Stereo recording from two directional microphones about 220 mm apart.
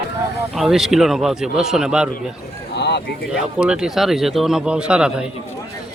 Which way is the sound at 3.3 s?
5° right (ahead or behind).